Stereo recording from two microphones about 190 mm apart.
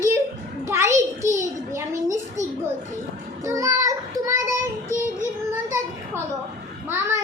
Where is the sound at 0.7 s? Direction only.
15° right (ahead or behind).